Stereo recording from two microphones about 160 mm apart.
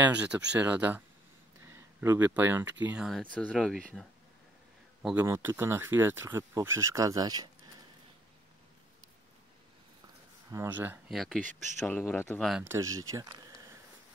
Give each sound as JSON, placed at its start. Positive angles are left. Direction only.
{"t": 0.0, "sound": "speech", "side_deg": -10}
{"t": 3.3, "sound": "speech", "side_deg": 5}
{"t": 5.2, "sound": "speech", "side_deg": -15}
{"t": 10.5, "sound": "speech", "side_deg": -15}
{"t": 11.1, "sound": "speech", "side_deg": 0}
{"t": 12.6, "sound": "speech", "side_deg": -20}